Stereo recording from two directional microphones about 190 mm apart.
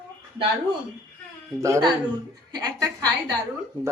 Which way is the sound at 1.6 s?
20° right (ahead or behind).